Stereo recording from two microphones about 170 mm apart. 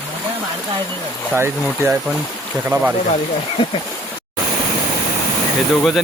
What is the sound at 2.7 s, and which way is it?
Speech, 25° right (ahead or behind).